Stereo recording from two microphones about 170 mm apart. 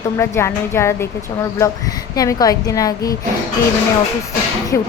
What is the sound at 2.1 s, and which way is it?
A woman's voice, 20° left (ahead or behind).